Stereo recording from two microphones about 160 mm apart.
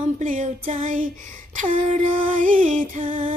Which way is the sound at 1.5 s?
50° right (ahead or behind).